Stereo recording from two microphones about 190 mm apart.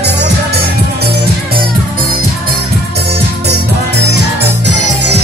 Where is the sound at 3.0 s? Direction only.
60° right (ahead or behind).